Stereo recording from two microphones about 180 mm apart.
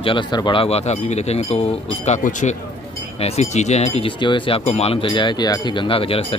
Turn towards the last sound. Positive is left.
turn(degrees=30)  # may be behind; listen again after turning